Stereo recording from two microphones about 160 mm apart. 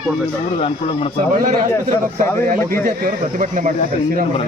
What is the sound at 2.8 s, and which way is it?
Speech, 60° right (ahead or behind).